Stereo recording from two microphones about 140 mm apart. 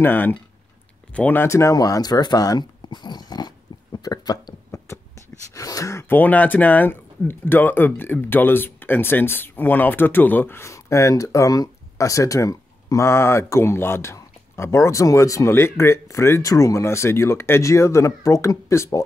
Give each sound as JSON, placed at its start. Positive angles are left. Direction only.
{"t": 0.0, "sound": "speech", "side_deg": 15}
{"t": 4.6, "sound": "beatboxing", "side_deg": 20}
{"t": 5.5, "sound": "speech", "side_deg": 25}